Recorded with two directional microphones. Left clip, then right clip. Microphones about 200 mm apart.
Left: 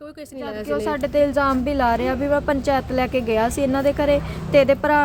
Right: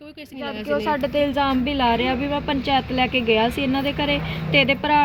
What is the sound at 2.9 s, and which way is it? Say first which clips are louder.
Speech: right 1 dB; 35° left (ahead or behind).